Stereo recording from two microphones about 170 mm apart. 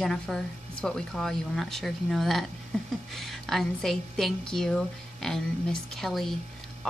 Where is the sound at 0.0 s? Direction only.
5° left (ahead or behind).